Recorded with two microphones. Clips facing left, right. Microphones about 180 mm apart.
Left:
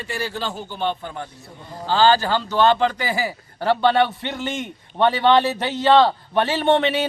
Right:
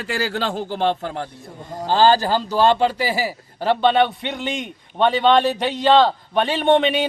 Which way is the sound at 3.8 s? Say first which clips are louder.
Right 2 dB; 20° right (ahead or behind).